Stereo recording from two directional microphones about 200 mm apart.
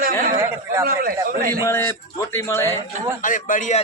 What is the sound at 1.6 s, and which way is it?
Speech, 15° left (ahead or behind).